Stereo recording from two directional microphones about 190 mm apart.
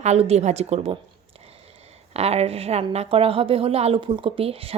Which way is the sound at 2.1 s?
35° right (ahead or behind).